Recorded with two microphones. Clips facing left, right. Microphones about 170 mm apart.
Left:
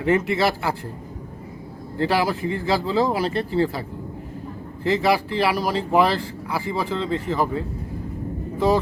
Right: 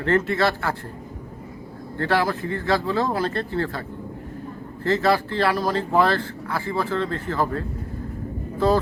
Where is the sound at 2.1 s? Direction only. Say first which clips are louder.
Right 1 dB; 15° left (ahead or behind).